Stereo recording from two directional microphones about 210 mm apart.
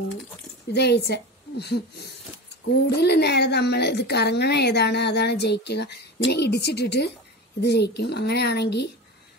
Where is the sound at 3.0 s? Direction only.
50° left (ahead or behind).